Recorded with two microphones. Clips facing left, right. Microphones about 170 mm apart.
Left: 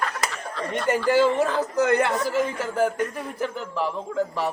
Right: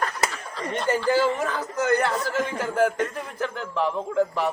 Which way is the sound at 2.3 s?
5° left (ahead or behind).